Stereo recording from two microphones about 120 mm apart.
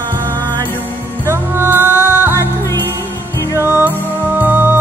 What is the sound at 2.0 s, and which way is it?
Music, 20° left (ahead or behind).